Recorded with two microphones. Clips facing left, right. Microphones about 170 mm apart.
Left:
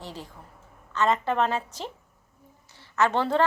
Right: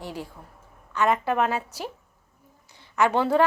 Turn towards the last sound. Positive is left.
turn(degrees=-10)  # may be behind; listen again after turning